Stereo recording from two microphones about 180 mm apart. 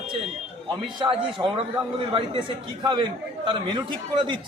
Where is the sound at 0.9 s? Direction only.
25° right (ahead or behind).